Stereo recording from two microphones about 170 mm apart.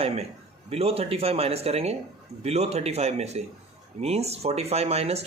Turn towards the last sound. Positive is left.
turn(degrees=-40)  # may be behind; listen again after turning